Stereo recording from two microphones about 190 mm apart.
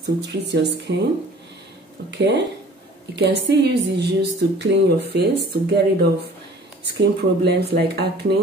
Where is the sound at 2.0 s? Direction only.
65° right (ahead or behind).